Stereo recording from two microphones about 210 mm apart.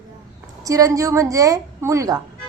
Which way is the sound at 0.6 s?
15° right (ahead or behind).